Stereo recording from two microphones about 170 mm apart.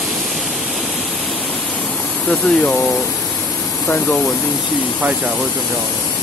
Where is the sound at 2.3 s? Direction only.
5° left (ahead or behind).